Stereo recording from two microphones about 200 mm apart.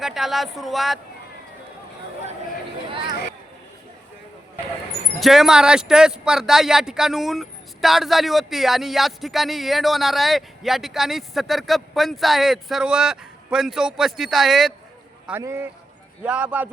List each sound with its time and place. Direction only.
0.0 s speech: centre (ahead or behind)
2.9 s a sound: 25° right (ahead or behind)
5.2 s speech: centre (ahead or behind)
15.3 s a man's voice: 10° right (ahead or behind)